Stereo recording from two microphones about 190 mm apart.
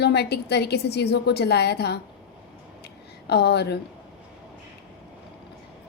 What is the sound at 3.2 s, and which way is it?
Speech, 60° left (ahead or behind).